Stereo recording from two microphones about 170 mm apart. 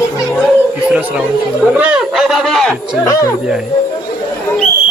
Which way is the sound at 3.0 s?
20° left (ahead or behind).